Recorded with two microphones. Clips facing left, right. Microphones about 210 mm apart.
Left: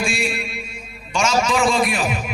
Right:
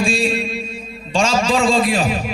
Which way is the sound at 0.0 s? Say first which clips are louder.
Right 5 dB; 30° right (ahead or behind).